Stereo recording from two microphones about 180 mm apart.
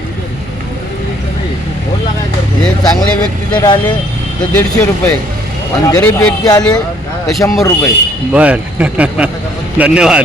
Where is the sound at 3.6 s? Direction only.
25° left (ahead or behind).